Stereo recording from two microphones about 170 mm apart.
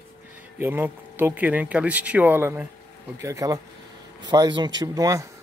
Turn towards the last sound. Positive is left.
turn(degrees=-20)  # may be behind; listen again after turning